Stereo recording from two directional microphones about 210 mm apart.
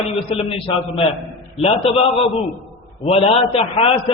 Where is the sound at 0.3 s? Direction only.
25° left (ahead or behind).